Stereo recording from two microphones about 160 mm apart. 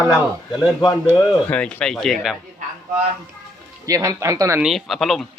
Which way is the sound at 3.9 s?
20° right (ahead or behind).